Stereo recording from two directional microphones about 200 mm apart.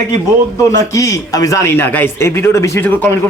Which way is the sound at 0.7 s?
15° left (ahead or behind).